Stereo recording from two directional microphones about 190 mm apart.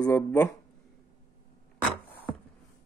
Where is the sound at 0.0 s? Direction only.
10° left (ahead or behind).